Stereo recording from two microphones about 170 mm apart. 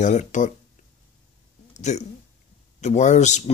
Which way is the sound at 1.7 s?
45° left (ahead or behind).